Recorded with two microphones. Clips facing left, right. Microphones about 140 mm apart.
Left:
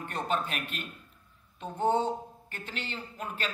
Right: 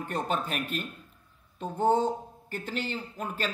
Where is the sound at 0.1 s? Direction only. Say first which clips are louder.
Right 1 dB; 40° right (ahead or behind).